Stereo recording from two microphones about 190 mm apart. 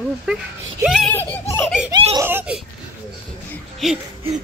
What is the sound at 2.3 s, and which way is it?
Speech, 10° right (ahead or behind).